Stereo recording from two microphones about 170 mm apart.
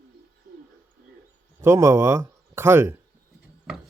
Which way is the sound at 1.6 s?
15° right (ahead or behind).